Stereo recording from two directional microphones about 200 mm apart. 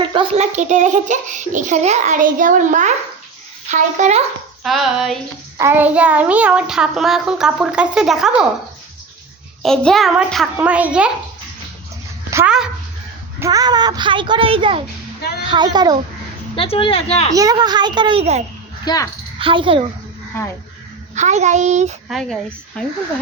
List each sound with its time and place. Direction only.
0.0 s a child's voice: 25° right (ahead or behind)
4.6 s a child's voice: centre (ahead or behind)
9.6 s a child's voice: centre (ahead or behind)
12.3 s speech: 10° right (ahead or behind)
13.4 s a child's voice: 20° right (ahead or behind)
16.6 s speech: 25° left (ahead or behind)
17.3 s a child's voice: 20° right (ahead or behind)
18.9 s speech: 20° left (ahead or behind)
19.4 s a child's voice: 25° right (ahead or behind)
21.2 s a child's voice: 35° right (ahead or behind)
22.1 s a child's voice: 5° left (ahead or behind)